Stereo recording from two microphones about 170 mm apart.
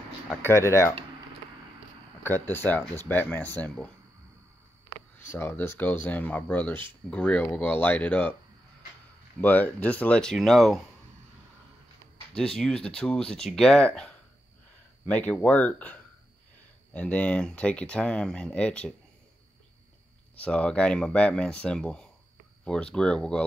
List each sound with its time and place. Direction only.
0.4 s speech: 15° left (ahead or behind)
2.2 s speech: 10° left (ahead or behind)
5.3 s speech: 15° left (ahead or behind)
9.4 s speech: 10° left (ahead or behind)
12.4 s speech: 5° left (ahead or behind)
20.3 s speech: 5° left (ahead or behind)